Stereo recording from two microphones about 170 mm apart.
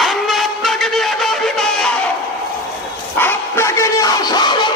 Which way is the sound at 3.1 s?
15° left (ahead or behind).